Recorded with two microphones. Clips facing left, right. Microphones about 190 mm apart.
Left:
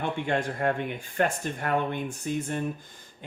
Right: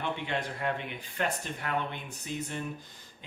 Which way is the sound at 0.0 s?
50° left (ahead or behind).